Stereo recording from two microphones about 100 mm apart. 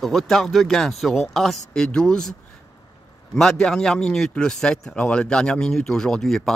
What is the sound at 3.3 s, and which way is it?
Speech, 5° left (ahead or behind).